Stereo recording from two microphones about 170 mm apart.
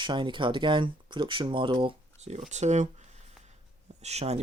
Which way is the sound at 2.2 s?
40° right (ahead or behind).